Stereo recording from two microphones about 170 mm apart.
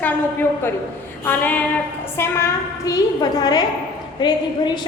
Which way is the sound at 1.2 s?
10° left (ahead or behind).